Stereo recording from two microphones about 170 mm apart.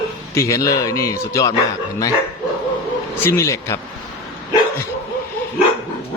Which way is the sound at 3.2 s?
15° left (ahead or behind).